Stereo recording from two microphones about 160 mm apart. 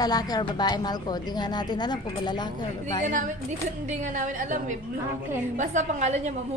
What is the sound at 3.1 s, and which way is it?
A woman's voice, 50° right (ahead or behind).